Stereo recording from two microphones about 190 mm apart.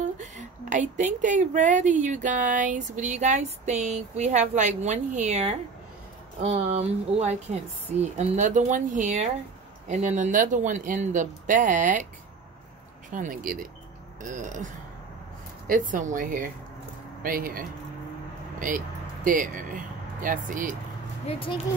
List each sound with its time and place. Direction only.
0.0 s speech: 40° right (ahead or behind)
13.1 s speech: 45° right (ahead or behind)
19.2 s speech: 45° right (ahead or behind)
21.3 s speech: 25° left (ahead or behind)